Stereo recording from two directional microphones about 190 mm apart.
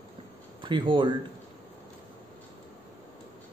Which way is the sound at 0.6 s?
25° right (ahead or behind).